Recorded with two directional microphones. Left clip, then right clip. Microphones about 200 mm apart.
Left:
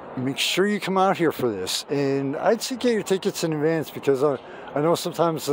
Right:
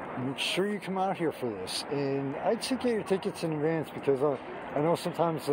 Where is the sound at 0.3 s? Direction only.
70° left (ahead or behind).